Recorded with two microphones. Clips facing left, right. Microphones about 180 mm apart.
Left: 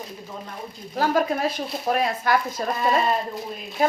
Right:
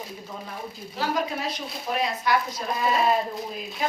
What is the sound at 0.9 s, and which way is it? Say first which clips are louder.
Speech: left 6 dB; 50° left (ahead or behind).